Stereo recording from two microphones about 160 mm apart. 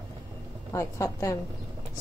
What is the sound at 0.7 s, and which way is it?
Speech, 20° left (ahead or behind).